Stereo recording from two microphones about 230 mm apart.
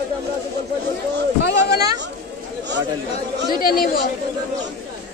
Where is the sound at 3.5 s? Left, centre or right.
Left.